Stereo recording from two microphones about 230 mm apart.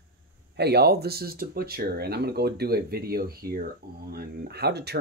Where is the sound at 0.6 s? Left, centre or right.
Right.